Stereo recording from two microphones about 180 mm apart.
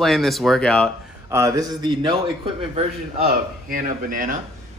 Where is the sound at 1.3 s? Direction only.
20° right (ahead or behind).